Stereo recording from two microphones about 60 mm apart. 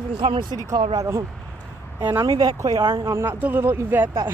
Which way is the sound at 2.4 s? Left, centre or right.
Right.